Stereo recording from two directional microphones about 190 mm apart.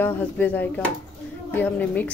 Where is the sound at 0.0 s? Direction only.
10° left (ahead or behind).